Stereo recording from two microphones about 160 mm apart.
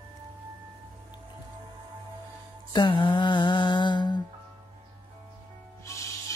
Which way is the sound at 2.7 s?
30° left (ahead or behind).